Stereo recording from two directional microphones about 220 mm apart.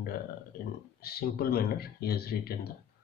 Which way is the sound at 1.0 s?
45° left (ahead or behind).